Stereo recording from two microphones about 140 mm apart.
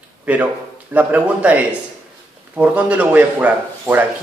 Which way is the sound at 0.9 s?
10° right (ahead or behind).